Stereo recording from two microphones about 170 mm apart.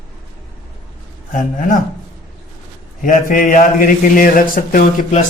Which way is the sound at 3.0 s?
50° left (ahead or behind).